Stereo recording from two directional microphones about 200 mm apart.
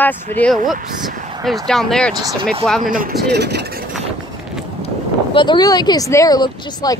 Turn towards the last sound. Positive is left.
turn(degrees=20)  # may be behind; listen again after turning